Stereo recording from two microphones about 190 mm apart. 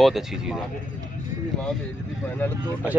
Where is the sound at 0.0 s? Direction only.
Centre (ahead or behind).